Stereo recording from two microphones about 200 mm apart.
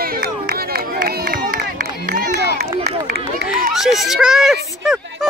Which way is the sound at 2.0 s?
45° right (ahead or behind).